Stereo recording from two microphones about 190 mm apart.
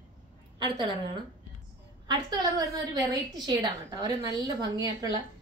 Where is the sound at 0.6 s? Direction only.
20° right (ahead or behind).